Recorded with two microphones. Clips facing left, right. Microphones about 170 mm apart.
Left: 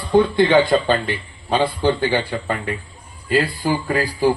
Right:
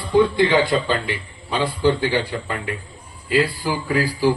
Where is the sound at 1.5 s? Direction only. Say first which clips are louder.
Left 1 dB; 60° left (ahead or behind).